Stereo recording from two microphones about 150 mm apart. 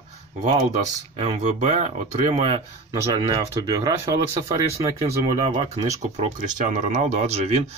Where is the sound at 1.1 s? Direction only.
45° right (ahead or behind).